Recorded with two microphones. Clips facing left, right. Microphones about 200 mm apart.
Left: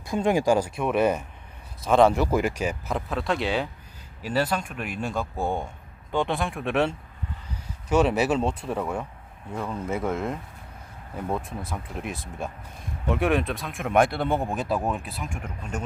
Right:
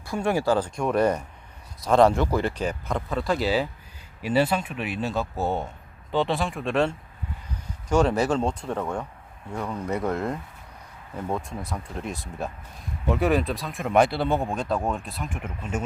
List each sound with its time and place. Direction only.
0.1 s speech: 15° left (ahead or behind); by 15.8 s 5° right (ahead or behind)